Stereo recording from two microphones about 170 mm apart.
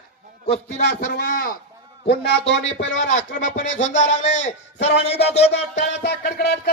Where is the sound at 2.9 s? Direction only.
45° left (ahead or behind).